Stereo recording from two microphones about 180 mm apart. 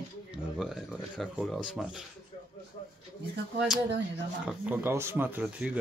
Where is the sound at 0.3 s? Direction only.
5° right (ahead or behind).